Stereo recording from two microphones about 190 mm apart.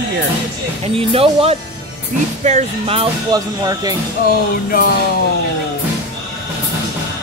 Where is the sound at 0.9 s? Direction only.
30° right (ahead or behind).